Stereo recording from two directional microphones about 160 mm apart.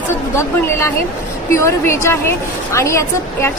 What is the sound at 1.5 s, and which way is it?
A woman's voice, 15° left (ahead or behind).